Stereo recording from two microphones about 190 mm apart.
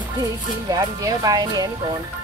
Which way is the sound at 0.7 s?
20° right (ahead or behind).